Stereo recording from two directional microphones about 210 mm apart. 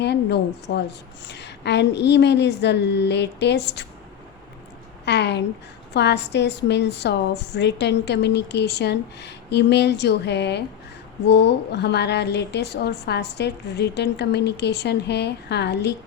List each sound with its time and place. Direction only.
0.0 s a woman's voice: 55° left (ahead or behind)
5.0 s a woman's voice: 55° left (ahead or behind)